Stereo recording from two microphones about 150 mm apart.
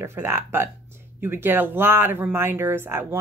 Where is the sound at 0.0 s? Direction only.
15° right (ahead or behind).